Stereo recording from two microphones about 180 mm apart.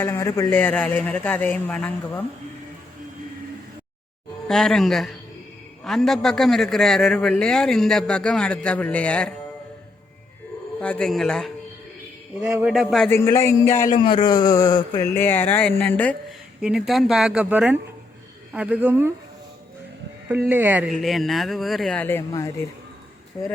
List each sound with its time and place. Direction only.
0.0 s speech: 15° left (ahead or behind)
4.4 s a man's voice: centre (ahead or behind)
10.8 s a man's voice: 5° left (ahead or behind)
12.6 s a man's voice: 5° right (ahead or behind)
13.1 s speech: 15° left (ahead or behind)
13.8 s speech: 25° left (ahead or behind)
15.1 s speech: 10° left (ahead or behind)
16.6 s a man's voice: 5° right (ahead or behind)
20.5 s a man's voice: 10° right (ahead or behind); by 22.5 s 20° left (ahead or behind)